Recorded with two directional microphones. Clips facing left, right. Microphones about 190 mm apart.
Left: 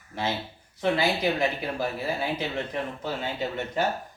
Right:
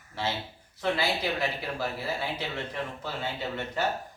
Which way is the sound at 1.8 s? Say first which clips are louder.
Left 2 dB; 15° left (ahead or behind).